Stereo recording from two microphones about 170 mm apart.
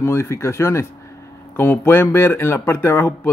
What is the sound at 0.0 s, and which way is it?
Speech, 15° left (ahead or behind).